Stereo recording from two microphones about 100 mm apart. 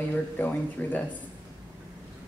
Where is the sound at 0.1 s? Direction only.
20° left (ahead or behind).